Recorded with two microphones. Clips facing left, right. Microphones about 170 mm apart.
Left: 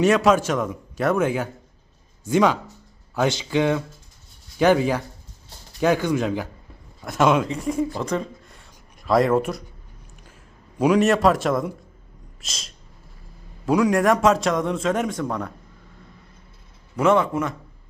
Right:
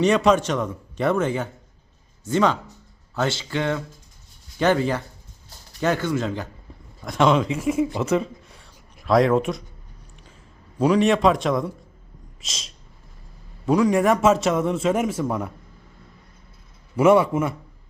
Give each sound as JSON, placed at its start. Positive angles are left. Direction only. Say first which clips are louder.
{"t": 0.0, "sound": "a man's voice", "louder": "even", "side_deg": 5}
{"t": 7.9, "sound": "a sound", "louder": "right 3 dB", "side_deg": -5}
{"t": 10.8, "sound": "a man's voice", "louder": "even", "side_deg": 10}
{"t": 12.4, "sound": "a sound", "louder": "even", "side_deg": 0}
{"t": 13.7, "sound": "a man's voice", "louder": "even", "side_deg": 0}
{"t": 17.0, "sound": "a man's voice", "louder": "right 3 dB", "side_deg": -10}